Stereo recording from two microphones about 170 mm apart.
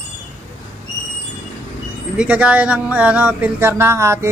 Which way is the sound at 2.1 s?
5° right (ahead or behind).